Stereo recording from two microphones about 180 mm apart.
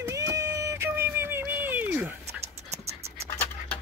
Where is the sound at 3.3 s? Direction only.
10° left (ahead or behind).